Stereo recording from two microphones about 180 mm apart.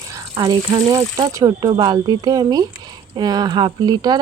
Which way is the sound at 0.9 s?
20° right (ahead or behind).